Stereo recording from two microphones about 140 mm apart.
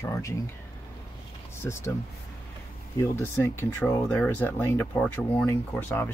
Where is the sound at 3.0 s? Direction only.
15° left (ahead or behind).